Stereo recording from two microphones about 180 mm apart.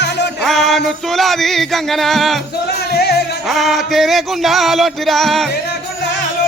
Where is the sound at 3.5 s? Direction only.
Centre (ahead or behind).